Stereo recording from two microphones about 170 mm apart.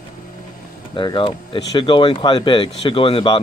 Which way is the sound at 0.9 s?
30° left (ahead or behind).